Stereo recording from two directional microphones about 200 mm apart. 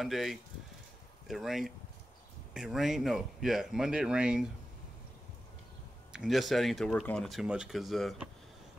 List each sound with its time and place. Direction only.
0.0 s speech: centre (ahead or behind)
6.1 s speech: centre (ahead or behind)